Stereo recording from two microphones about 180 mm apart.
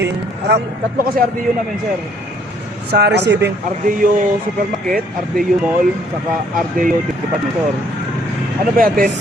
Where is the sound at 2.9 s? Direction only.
70° right (ahead or behind).